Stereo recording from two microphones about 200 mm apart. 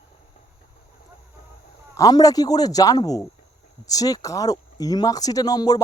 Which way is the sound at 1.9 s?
15° left (ahead or behind).